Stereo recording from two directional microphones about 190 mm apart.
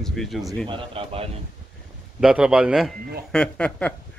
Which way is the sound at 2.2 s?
5° right (ahead or behind).